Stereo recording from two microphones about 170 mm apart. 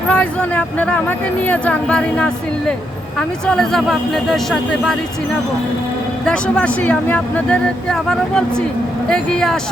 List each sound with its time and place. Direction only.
0.1 s speech: 10° left (ahead or behind)
6.2 s speech: 5° left (ahead or behind)